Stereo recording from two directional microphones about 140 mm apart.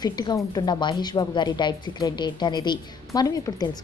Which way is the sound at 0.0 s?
30° left (ahead or behind).